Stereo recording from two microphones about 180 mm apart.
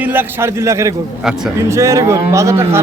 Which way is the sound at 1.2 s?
Centre (ahead or behind).